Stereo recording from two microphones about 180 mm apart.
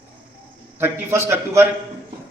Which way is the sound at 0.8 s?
15° right (ahead or behind).